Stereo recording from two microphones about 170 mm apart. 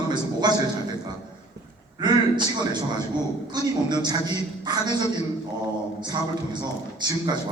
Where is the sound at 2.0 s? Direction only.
25° right (ahead or behind).